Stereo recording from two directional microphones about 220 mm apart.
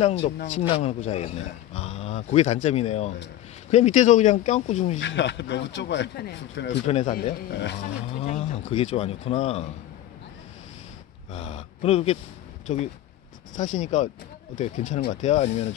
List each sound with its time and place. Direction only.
0.0 s speech: 25° left (ahead or behind)
4.9 s speech: 55° left (ahead or behind)
6.9 s speech: 30° left (ahead or behind)
7.5 s speech: 50° left (ahead or behind)
7.8 s speech: 30° left (ahead or behind)
11.3 s speech: 25° left (ahead or behind)